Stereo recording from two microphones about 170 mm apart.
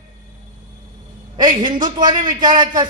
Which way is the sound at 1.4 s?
25° right (ahead or behind).